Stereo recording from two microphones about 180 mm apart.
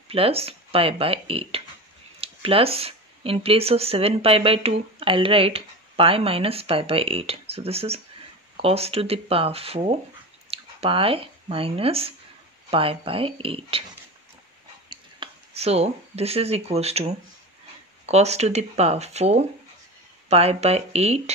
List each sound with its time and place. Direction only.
0.1 s speech: 30° right (ahead or behind)
14.9 s speech: 30° right (ahead or behind)